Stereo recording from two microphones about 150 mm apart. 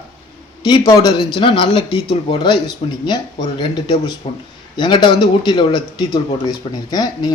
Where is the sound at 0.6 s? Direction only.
30° left (ahead or behind).